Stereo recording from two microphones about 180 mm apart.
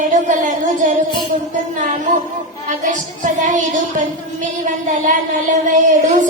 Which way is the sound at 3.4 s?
45° right (ahead or behind).